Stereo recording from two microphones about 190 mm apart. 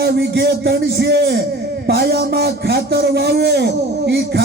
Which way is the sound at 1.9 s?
55° right (ahead or behind).